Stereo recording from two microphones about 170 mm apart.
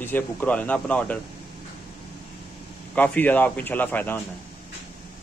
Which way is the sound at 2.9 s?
10° left (ahead or behind).